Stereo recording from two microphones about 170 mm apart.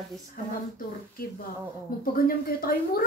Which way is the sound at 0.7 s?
60° left (ahead or behind).